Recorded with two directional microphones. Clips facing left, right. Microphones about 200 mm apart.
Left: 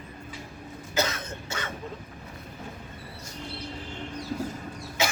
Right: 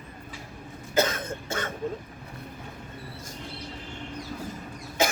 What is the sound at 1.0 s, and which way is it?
Cough, 50° right (ahead or behind).